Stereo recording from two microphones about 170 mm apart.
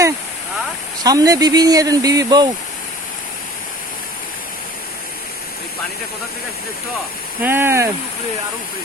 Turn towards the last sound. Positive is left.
turn(degrees=-15)  # may be behind; listen again after turning